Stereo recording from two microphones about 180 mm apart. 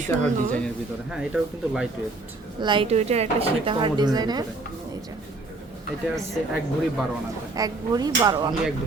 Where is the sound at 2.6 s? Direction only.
25° right (ahead or behind).